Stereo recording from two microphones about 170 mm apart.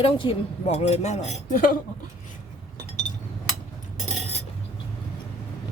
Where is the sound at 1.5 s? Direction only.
55° left (ahead or behind).